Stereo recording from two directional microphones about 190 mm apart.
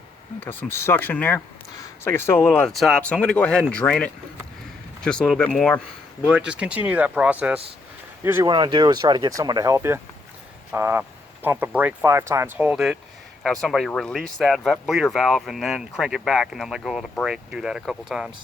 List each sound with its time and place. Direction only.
0.3 s speech: 15° left (ahead or behind); by 8.4 s 15° right (ahead or behind)
8.4 s speech: 25° right (ahead or behind); by 18.3 s centre (ahead or behind)